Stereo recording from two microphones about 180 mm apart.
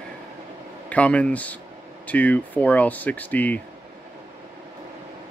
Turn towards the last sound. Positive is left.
turn(degrees=10)  # may be behind; listen again after turning